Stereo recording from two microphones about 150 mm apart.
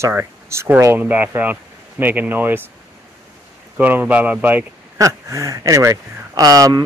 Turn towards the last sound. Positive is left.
turn(degrees=-25)  # may be behind; listen again after turning